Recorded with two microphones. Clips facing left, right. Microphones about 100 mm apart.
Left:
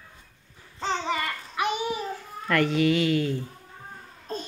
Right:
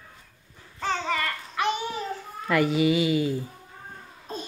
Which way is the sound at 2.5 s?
5° right (ahead or behind).